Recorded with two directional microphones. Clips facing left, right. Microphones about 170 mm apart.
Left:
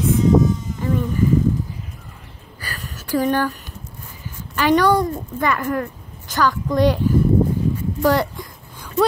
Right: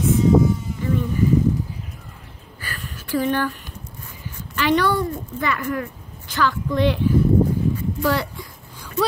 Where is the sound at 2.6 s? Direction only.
40° left (ahead or behind).